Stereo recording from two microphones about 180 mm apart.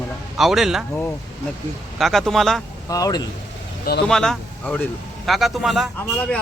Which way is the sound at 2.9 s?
20° left (ahead or behind).